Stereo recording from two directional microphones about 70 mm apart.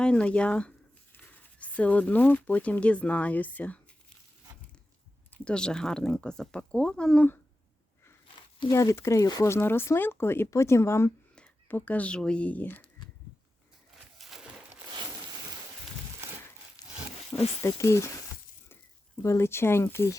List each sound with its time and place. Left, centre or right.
0.0 s speech: centre
5.5 s speech: centre
8.7 s speech: left
9.6 s speech: left
11.7 s speech: left
14.2 s a sound: centre
16.8 s a sound: left
17.6 s speech: left
19.2 s speech: left